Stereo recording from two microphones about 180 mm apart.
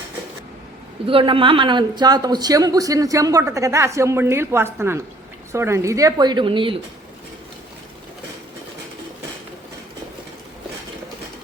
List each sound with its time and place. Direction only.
1.0 s a woman's voice: 30° right (ahead or behind)